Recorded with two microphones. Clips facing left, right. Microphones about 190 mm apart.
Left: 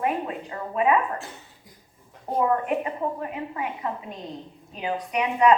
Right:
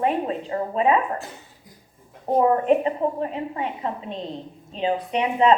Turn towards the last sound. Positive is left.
turn(degrees=-25)  # may be behind; listen again after turning